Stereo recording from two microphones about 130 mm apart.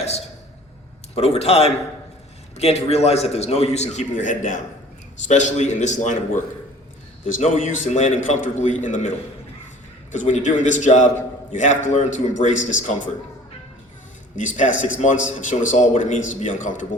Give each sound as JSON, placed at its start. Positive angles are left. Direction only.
{"t": 1.1, "sound": "a man's voice", "side_deg": 55}
{"t": 7.4, "sound": "a man's voice", "side_deg": 65}
{"t": 14.3, "sound": "a man's voice", "side_deg": 75}